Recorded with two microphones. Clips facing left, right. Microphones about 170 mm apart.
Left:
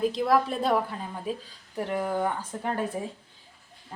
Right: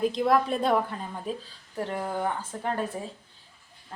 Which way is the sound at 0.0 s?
Centre (ahead or behind).